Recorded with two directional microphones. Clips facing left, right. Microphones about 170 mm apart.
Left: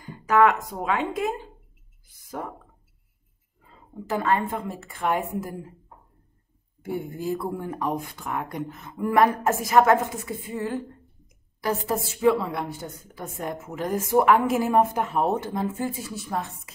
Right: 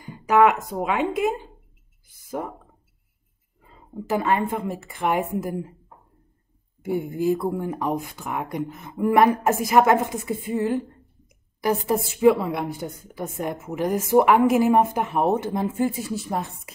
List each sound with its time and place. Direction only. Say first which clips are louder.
0.3 s a woman's voice: right 2 dB; 10° right (ahead or behind)
4.1 s a woman's voice: right 2 dB; 15° right (ahead or behind)
6.8 s a woman's voice: right 6 dB; 10° right (ahead or behind)
12.2 s a woman's voice: right 4 dB; 15° right (ahead or behind)